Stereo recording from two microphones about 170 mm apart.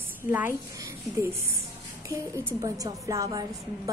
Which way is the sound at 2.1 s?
20° right (ahead or behind).